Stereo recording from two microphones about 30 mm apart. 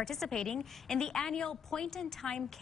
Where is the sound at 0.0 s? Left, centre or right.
Centre.